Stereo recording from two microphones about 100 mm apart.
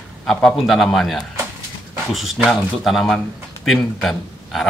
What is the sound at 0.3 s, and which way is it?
A man's voice, 5° left (ahead or behind).